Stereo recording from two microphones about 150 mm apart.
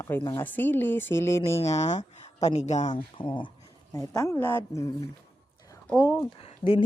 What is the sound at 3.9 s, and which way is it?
Speech, 20° left (ahead or behind).